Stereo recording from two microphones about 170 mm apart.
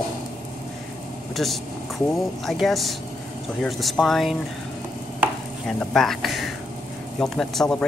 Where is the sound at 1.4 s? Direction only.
Centre (ahead or behind).